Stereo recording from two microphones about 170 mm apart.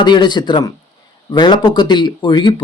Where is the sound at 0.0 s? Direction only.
25° left (ahead or behind).